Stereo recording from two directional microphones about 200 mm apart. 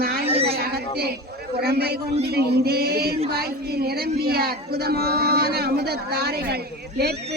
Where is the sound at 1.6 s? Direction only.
50° right (ahead or behind).